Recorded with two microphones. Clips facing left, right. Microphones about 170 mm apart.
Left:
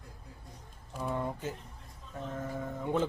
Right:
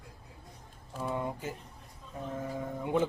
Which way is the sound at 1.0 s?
5° right (ahead or behind).